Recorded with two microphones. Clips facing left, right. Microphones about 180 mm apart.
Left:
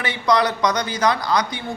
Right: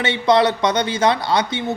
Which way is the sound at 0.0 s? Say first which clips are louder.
Right 4 dB; 25° right (ahead or behind).